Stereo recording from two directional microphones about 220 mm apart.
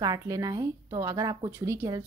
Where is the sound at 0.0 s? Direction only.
15° right (ahead or behind).